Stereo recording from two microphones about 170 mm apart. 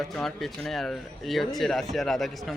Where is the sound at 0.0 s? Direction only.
Centre (ahead or behind).